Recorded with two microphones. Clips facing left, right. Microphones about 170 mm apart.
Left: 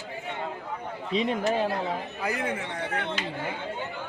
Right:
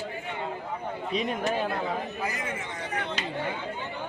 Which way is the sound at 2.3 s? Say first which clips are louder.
Left 4 dB; 65° left (ahead or behind).